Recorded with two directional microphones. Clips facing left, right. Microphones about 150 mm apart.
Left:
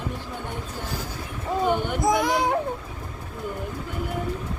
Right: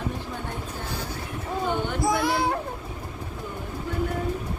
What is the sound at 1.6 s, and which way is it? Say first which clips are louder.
Speech: left 2 dB; 20° left (ahead or behind).